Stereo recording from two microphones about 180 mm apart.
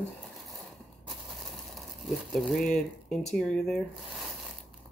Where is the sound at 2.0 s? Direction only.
Centre (ahead or behind).